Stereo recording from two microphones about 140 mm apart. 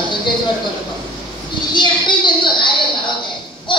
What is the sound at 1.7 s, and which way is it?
Speech, 35° left (ahead or behind).